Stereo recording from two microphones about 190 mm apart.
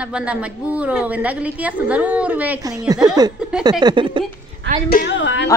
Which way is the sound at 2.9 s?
20° right (ahead or behind).